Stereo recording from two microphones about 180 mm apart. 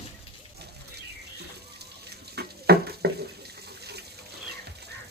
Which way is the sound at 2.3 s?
65° right (ahead or behind).